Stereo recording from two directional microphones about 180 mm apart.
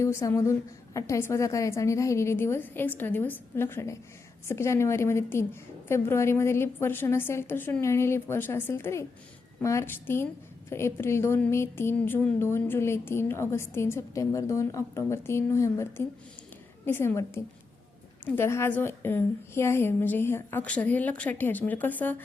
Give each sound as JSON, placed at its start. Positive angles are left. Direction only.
{"t": 0.0, "sound": "speech", "side_deg": 15}